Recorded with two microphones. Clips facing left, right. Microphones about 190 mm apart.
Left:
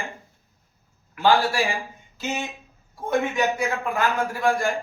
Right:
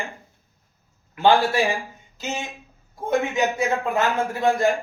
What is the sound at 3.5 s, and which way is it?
A man's voice, 25° right (ahead or behind).